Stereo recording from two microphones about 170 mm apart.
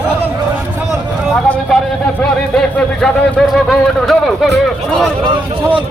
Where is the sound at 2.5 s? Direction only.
5° left (ahead or behind).